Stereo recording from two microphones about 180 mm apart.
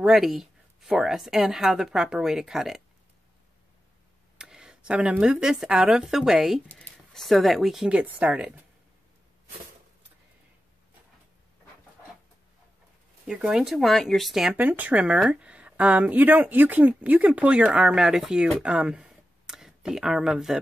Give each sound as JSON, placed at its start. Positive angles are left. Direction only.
{"t": 0.0, "sound": "speech", "side_deg": 0}
{"t": 4.4, "sound": "speech", "side_deg": -5}
{"t": 13.3, "sound": "speech", "side_deg": -5}